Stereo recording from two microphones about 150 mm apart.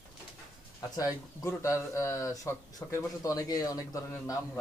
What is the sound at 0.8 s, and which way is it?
Speech, 25° left (ahead or behind).